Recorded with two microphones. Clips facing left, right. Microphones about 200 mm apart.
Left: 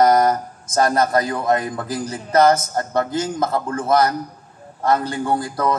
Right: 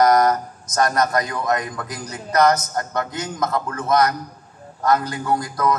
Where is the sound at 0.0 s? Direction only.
30° left (ahead or behind).